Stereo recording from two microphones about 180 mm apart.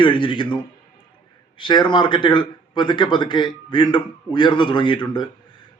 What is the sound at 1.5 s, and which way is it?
A man's voice, 25° left (ahead or behind).